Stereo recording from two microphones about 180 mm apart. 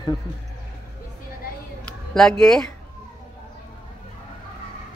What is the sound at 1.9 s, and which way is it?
Speech, 5° left (ahead or behind).